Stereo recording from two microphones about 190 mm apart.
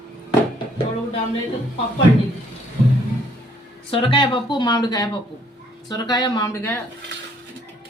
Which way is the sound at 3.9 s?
25° left (ahead or behind).